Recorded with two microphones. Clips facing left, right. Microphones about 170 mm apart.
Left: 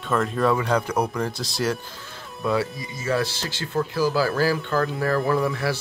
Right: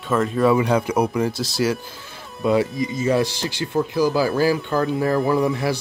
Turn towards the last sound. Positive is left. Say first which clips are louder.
# right 3 dB
turn(degrees=-20)  # may be behind; listen again after turning